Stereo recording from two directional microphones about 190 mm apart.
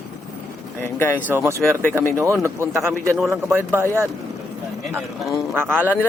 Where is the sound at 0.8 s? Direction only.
10° left (ahead or behind).